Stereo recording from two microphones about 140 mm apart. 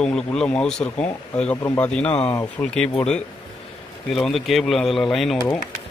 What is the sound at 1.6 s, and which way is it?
Speech, 20° left (ahead or behind).